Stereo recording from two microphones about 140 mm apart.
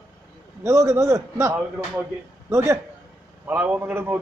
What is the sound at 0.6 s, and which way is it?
A man's voice, 20° right (ahead or behind).